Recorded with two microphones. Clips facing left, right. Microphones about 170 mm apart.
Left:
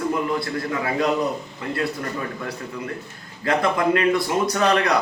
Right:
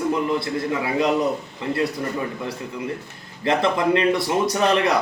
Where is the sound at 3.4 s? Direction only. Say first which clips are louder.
Right 1 dB; 20° right (ahead or behind).